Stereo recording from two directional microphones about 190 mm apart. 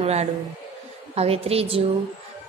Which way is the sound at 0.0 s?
35° right (ahead or behind).